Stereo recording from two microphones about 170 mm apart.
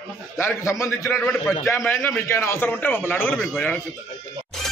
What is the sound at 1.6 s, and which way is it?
A man's voice, 15° left (ahead or behind).